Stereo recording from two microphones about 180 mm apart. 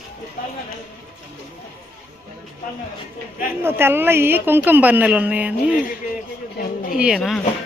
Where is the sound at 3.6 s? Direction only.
15° right (ahead or behind).